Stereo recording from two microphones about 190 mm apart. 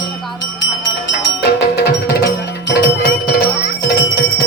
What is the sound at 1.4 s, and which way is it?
Music, 60° left (ahead or behind).